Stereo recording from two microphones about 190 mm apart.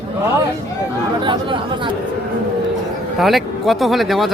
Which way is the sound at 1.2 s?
25° right (ahead or behind).